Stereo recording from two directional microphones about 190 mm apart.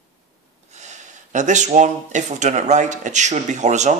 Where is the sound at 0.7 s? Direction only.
40° right (ahead or behind).